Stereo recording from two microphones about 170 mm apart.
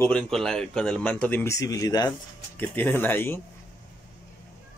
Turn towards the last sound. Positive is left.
turn(degrees=10)  # may be behind; listen again after turning